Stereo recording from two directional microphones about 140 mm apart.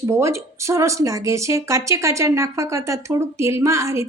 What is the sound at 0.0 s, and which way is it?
A woman's voice, 20° right (ahead or behind).